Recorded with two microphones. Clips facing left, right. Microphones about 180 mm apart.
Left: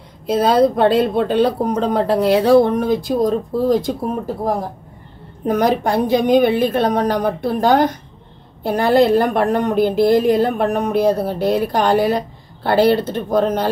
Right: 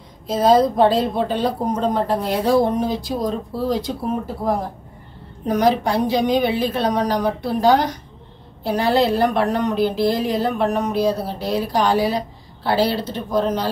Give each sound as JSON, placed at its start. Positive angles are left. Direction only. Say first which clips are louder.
{"t": 0.3, "sound": "a woman's voice", "louder": "left 1 dB", "side_deg": 65}
{"t": 5.5, "sound": "a woman's voice", "louder": "left 1 dB", "side_deg": 50}